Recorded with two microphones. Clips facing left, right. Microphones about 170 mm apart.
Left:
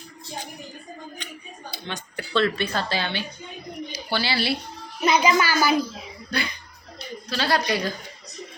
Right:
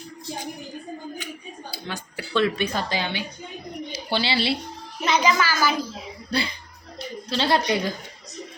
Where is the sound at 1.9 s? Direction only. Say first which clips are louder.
Left 1 dB; 10° right (ahead or behind).